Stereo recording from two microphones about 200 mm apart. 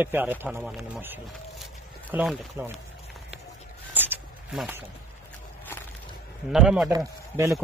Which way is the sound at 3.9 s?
10° right (ahead or behind).